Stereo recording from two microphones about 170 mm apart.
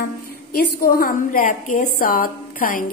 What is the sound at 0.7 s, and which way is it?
A woman's voice, 60° left (ahead or behind).